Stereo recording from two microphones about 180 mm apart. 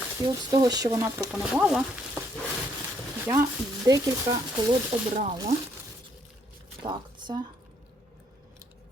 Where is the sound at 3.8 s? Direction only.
20° right (ahead or behind).